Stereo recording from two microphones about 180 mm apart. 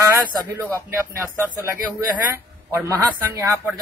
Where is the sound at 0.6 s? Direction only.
15° right (ahead or behind).